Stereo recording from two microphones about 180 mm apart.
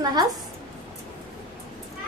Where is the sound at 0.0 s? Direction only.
25° right (ahead or behind).